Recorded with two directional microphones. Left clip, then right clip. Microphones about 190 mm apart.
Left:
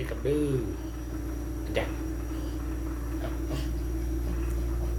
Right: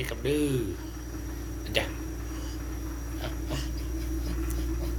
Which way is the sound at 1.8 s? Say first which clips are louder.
Right 2 dB; 30° right (ahead or behind).